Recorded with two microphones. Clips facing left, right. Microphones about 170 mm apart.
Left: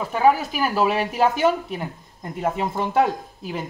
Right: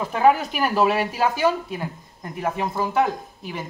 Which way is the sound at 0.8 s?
20° left (ahead or behind).